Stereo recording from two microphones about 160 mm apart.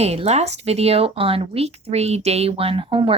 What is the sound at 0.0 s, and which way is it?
A woman's voice, 40° right (ahead or behind).